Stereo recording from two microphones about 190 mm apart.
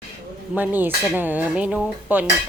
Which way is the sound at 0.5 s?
10° right (ahead or behind).